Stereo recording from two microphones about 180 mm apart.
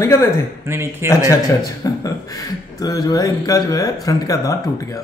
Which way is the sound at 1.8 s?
20° left (ahead or behind).